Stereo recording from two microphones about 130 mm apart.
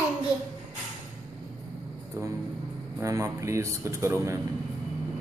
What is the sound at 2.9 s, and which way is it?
A man's voice, 25° right (ahead or behind).